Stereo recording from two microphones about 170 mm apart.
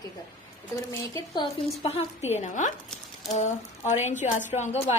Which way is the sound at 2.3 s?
45° left (ahead or behind).